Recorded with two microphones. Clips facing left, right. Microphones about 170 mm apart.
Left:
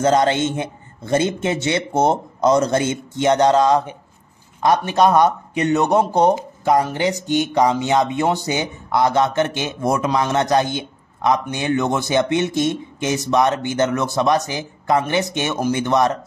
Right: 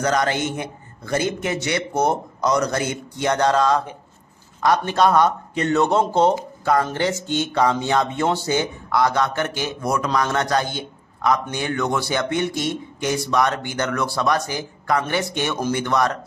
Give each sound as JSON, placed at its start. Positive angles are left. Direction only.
{"t": 0.0, "sound": "a man's voice", "side_deg": 25}